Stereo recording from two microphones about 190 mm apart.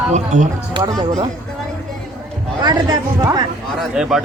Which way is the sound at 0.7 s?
25° right (ahead or behind).